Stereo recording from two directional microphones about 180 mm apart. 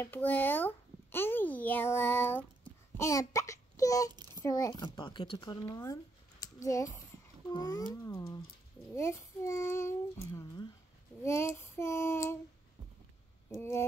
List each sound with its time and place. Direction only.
0.0 s a child's voice: 10° left (ahead or behind)
13.6 s a child's voice: 15° left (ahead or behind)